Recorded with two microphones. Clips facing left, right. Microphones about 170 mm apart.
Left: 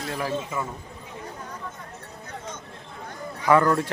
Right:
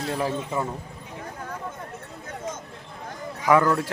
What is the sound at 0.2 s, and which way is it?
Speech, 25° right (ahead or behind).